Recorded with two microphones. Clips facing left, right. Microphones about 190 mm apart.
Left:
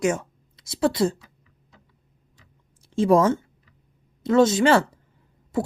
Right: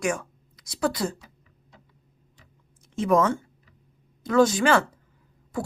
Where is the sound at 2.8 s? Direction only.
30° left (ahead or behind).